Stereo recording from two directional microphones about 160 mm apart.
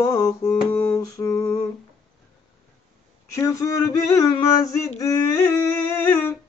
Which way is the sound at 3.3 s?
20° left (ahead or behind).